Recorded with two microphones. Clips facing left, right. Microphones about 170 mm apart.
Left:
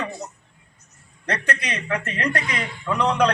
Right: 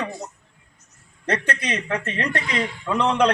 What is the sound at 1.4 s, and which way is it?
Speech, 30° right (ahead or behind).